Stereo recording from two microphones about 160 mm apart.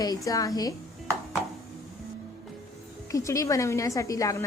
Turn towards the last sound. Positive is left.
turn(degrees=20)  # may be behind; listen again after turning